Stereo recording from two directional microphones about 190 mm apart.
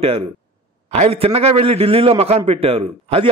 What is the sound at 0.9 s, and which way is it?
A man's voice, 30° right (ahead or behind).